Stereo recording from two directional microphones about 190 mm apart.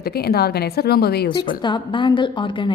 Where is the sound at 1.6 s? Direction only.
25° left (ahead or behind).